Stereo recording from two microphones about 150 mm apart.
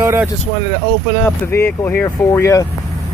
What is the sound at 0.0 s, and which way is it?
Speech, 15° right (ahead or behind).